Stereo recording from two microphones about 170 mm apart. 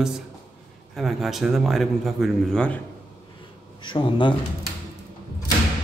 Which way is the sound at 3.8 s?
30° left (ahead or behind).